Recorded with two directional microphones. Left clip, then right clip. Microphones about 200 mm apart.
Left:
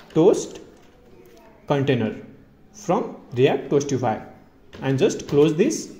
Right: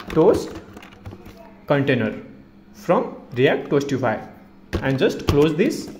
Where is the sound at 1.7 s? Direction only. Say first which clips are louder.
Right 2 dB; 10° left (ahead or behind).